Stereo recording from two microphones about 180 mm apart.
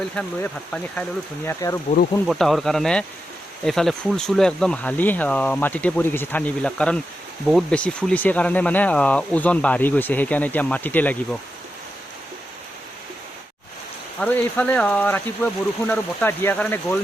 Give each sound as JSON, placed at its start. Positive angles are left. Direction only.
{"t": 0.2, "sound": "speech", "side_deg": 5}
{"t": 1.5, "sound": "speech", "side_deg": 15}
{"t": 2.2, "sound": "speech", "side_deg": 0}
{"t": 14.2, "sound": "speech", "side_deg": 5}